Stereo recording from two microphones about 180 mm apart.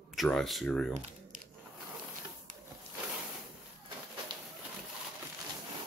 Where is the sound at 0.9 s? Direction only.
40° right (ahead or behind).